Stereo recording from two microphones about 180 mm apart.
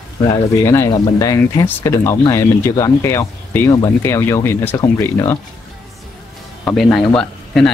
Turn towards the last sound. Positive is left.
turn(degrees=0)  # may be behind; listen again after turning